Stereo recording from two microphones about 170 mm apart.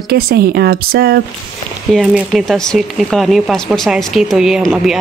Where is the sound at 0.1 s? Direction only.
65° right (ahead or behind).